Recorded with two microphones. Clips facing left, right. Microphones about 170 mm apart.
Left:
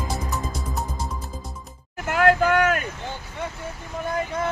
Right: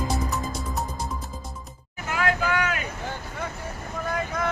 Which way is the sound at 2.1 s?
60° left (ahead or behind).